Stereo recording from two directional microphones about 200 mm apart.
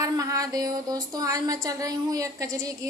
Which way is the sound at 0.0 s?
15° right (ahead or behind).